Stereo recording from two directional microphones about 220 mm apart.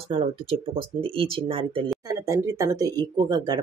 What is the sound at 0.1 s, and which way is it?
Speech, 25° right (ahead or behind).